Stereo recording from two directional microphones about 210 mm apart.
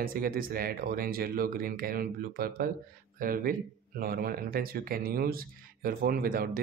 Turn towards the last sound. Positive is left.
turn(degrees=-45)  # may be behind; listen again after turning